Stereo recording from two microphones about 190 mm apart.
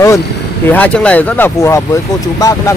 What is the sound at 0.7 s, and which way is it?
Speech, 10° left (ahead or behind).